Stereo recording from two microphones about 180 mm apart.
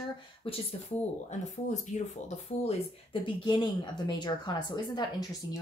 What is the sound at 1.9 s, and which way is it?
Speech, 40° left (ahead or behind).